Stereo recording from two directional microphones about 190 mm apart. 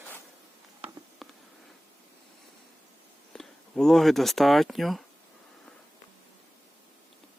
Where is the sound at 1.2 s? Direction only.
Centre (ahead or behind).